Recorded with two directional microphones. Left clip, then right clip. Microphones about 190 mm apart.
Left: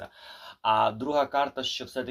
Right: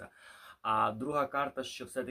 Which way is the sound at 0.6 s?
10° right (ahead or behind).